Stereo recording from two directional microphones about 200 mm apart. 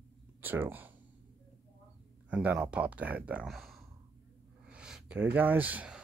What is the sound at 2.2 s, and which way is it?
Speech, 5° right (ahead or behind).